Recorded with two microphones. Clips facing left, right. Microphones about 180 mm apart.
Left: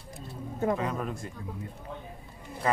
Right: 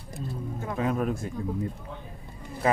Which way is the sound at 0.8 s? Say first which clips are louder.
Right 6 dB; 10° right (ahead or behind).